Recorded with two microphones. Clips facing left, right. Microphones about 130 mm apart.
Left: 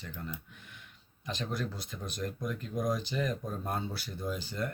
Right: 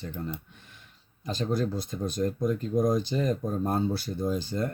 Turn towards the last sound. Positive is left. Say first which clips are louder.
# right 7 dB
turn(degrees=-40)  # may be behind; listen again after turning